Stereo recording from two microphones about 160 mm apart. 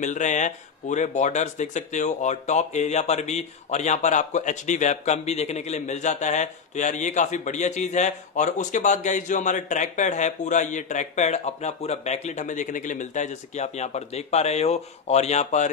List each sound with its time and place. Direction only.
0.0 s speech: 50° left (ahead or behind)